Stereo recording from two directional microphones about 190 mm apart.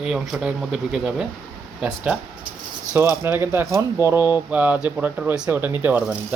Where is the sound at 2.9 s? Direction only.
15° right (ahead or behind).